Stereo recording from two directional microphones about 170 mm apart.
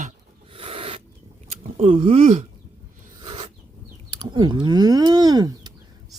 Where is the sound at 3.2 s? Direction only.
35° right (ahead or behind).